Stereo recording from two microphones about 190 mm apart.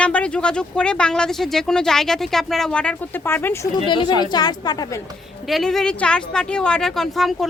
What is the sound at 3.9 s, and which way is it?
A woman's voice, 25° left (ahead or behind).